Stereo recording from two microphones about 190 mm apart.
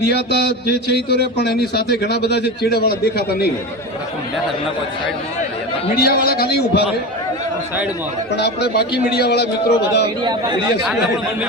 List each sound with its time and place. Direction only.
0.0 s a man's voice: 60° left (ahead or behind)
6.0 s a man's voice: 55° left (ahead or behind)
8.4 s a man's voice: 60° left (ahead or behind)